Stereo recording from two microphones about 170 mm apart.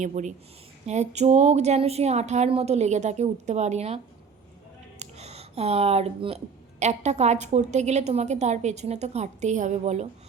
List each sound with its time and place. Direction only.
0.0 s speech: 45° right (ahead or behind)